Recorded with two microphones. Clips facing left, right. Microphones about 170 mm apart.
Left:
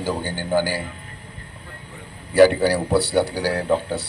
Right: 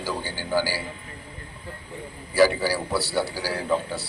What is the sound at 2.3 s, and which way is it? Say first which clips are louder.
Speech: left 6 dB; 55° left (ahead or behind).